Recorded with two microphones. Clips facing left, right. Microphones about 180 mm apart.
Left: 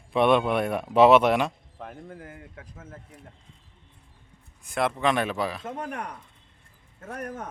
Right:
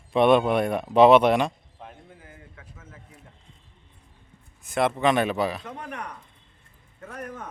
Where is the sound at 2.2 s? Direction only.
55° left (ahead or behind).